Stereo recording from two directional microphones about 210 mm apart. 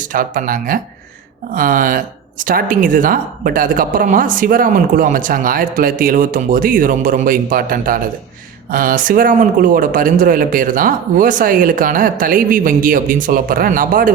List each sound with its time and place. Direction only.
0.0 s a woman's voice: 40° right (ahead or behind)